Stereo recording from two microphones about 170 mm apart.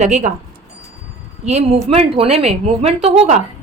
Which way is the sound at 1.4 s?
40° right (ahead or behind).